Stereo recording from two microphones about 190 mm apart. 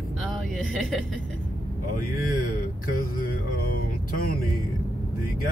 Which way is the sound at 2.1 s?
50° left (ahead or behind).